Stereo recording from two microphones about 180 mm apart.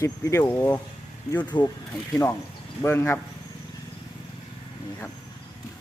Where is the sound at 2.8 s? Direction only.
15° left (ahead or behind).